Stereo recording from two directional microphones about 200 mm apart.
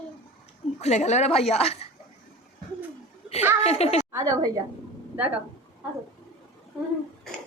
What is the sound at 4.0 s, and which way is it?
Speech, 15° right (ahead or behind).